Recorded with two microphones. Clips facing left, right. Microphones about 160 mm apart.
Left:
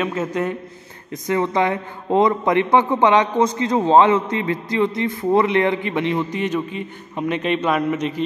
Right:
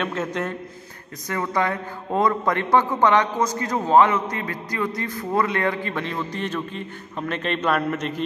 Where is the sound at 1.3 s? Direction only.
20° left (ahead or behind).